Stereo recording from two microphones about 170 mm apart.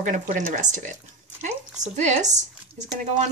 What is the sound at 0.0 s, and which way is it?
Speech, 50° right (ahead or behind).